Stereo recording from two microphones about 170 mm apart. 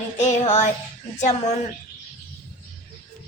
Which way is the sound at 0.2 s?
45° left (ahead or behind).